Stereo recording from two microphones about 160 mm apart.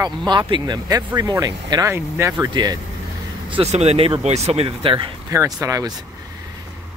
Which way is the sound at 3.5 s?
40° right (ahead or behind).